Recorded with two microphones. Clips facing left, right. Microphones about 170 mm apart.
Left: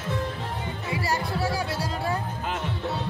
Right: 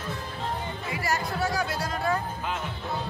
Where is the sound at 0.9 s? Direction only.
30° left (ahead or behind).